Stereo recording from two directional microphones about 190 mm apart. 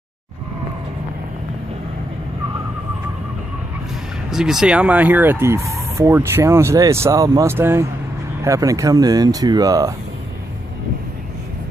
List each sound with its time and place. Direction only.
4.3 s speech: 5° right (ahead or behind); by 9.9 s 20° right (ahead or behind)